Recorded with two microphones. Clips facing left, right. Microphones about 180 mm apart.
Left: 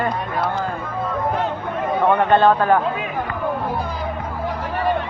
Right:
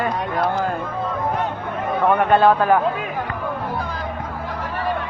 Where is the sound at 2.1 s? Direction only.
10° right (ahead or behind).